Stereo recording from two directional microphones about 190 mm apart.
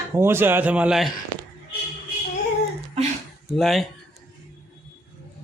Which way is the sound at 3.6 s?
Centre (ahead or behind).